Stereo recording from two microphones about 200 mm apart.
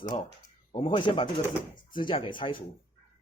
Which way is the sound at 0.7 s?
25° left (ahead or behind).